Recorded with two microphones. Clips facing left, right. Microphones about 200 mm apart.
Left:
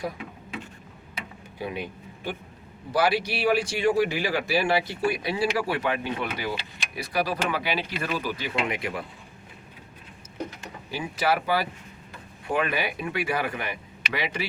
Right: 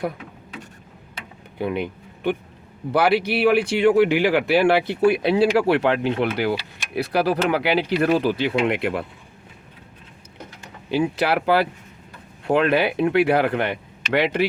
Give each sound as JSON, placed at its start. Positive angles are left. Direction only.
{"t": 1.5, "sound": "speech", "side_deg": -55}
{"t": 10.9, "sound": "speech", "side_deg": -65}